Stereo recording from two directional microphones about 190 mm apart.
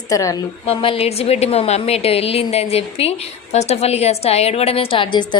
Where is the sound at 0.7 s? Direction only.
30° left (ahead or behind).